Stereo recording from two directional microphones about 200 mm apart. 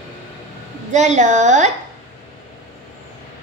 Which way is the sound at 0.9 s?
35° right (ahead or behind).